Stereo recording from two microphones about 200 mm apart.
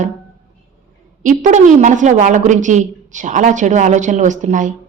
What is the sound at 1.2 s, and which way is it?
A woman's voice, 40° right (ahead or behind).